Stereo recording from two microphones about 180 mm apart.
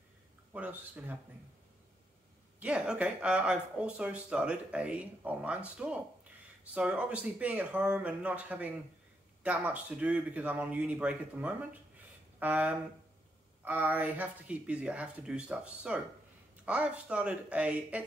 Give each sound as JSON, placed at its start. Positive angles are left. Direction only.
{"t": 0.5, "sound": "speech", "side_deg": -10}
{"t": 2.6, "sound": "speech", "side_deg": -5}